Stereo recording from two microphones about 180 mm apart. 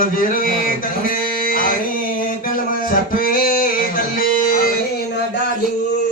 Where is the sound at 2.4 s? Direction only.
50° left (ahead or behind).